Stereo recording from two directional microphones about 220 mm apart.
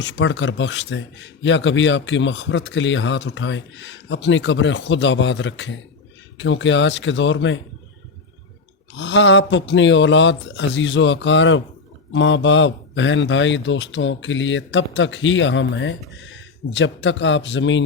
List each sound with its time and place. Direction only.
0.0 s speech: 55° left (ahead or behind)
9.0 s speech: 55° left (ahead or behind)